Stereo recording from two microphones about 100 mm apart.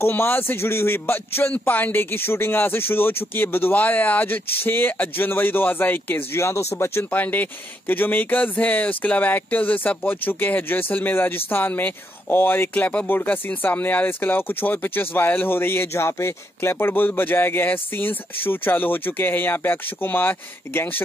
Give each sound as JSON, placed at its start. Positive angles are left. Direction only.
{"t": 0.0, "sound": "a man's voice", "side_deg": 25}